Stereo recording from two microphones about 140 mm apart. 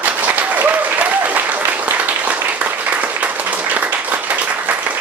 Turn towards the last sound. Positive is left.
turn(degrees=-10)  # may be behind; listen again after turning